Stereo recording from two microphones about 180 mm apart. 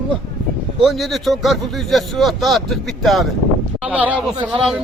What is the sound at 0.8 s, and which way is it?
Speech, centre (ahead or behind).